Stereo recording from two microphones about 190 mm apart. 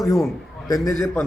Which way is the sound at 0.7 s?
20° left (ahead or behind).